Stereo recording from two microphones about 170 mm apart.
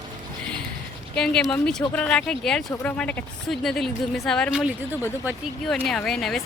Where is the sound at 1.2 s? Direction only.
5° left (ahead or behind).